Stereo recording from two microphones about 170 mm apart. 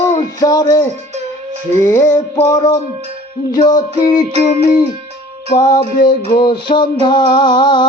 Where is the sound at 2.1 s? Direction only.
25° left (ahead or behind).